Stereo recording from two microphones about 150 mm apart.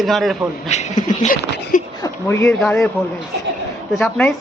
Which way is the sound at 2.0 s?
20° left (ahead or behind).